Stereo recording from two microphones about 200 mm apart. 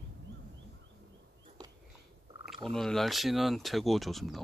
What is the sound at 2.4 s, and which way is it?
Speech, centre (ahead or behind).